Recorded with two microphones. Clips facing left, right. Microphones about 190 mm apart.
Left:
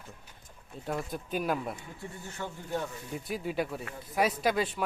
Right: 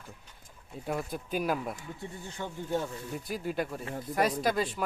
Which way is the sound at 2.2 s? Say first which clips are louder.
Right 2 dB; 15° right (ahead or behind).